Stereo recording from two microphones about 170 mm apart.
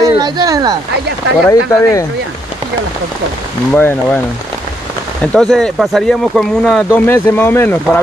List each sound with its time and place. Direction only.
0.0 s a sound: 20° right (ahead or behind)
1.5 s speech: 20° left (ahead or behind)
3.7 s speech: 10° left (ahead or behind)
5.2 s speech: 5° left (ahead or behind)